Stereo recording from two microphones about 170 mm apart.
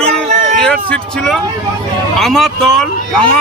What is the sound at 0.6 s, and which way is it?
A man's voice, 5° left (ahead or behind).